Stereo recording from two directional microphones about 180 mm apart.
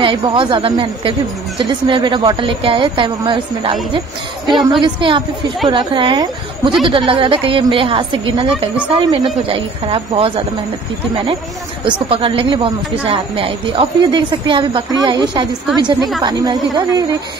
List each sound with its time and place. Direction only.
0.0 s speech: 25° right (ahead or behind)
4.8 s a woman's voice: 25° right (ahead or behind)
11.8 s speech: 30° right (ahead or behind)